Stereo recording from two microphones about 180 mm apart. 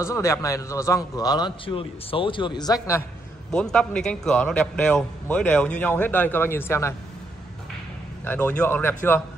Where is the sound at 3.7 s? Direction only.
5° left (ahead or behind).